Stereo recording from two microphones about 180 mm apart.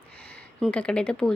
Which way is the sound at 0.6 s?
5° left (ahead or behind).